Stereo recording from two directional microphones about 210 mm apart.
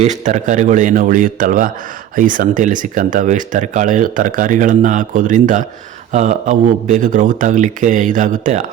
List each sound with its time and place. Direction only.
0.0 s speech: 35° right (ahead or behind)